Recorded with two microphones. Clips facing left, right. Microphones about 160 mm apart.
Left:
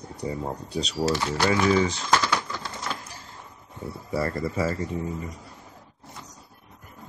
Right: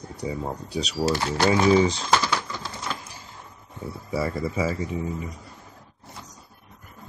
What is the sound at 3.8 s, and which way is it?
Speech, centre (ahead or behind).